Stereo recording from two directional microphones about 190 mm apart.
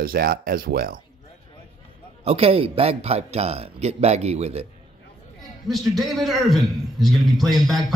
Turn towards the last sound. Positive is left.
turn(degrees=0)  # may be behind; listen again after turning